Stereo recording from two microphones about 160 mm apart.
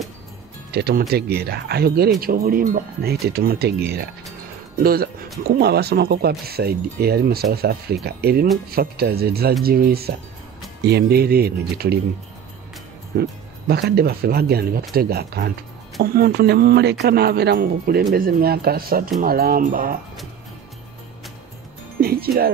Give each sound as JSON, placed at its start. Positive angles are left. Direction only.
{"t": 0.7, "sound": "speech", "side_deg": -80}
{"t": 2.1, "sound": "speech", "side_deg": -70}
{"t": 4.8, "sound": "speech", "side_deg": -70}
{"t": 5.6, "sound": "speech", "side_deg": -90}
{"t": 10.8, "sound": "speech", "side_deg": -90}
{"t": 13.2, "sound": "speech", "side_deg": -85}
{"t": 22.0, "sound": "music", "side_deg": -70}